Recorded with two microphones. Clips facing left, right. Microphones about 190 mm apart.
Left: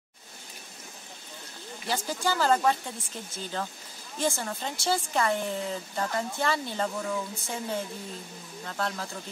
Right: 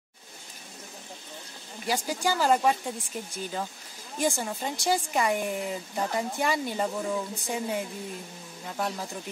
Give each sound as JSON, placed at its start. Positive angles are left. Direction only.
{"t": 1.9, "sound": "a woman's voice", "side_deg": -10}
{"t": 4.2, "sound": "a woman's voice", "side_deg": -15}